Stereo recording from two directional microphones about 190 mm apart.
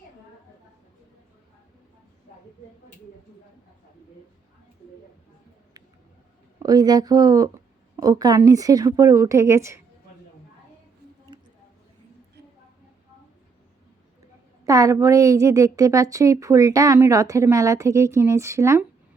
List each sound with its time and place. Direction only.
6.6 s a woman's voice: 20° right (ahead or behind)
11.3 s a sound: 25° right (ahead or behind)
14.6 s a woman's voice: 20° right (ahead or behind)